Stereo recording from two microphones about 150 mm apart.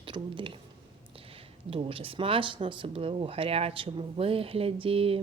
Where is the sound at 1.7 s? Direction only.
40° right (ahead or behind).